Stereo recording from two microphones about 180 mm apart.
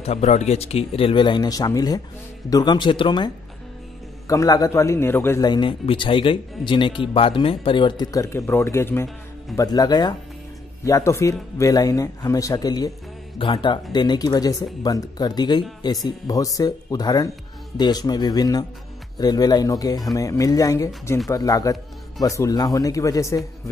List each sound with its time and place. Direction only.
0.0 s speech: 35° left (ahead or behind)
4.3 s speech: 20° left (ahead or behind)